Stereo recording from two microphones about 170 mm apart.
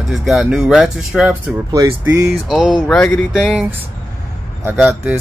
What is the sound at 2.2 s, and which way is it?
Speech, centre (ahead or behind).